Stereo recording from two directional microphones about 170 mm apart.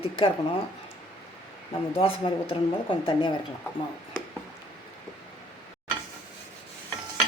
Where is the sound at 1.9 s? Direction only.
35° left (ahead or behind).